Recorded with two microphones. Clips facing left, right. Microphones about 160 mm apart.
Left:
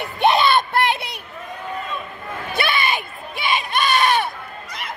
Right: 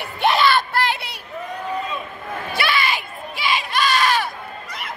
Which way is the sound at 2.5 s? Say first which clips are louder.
Left 1 dB; 20° left (ahead or behind).